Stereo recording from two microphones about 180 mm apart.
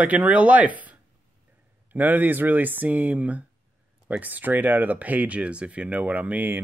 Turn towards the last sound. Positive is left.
turn(degrees=-10)  # may be behind; listen again after turning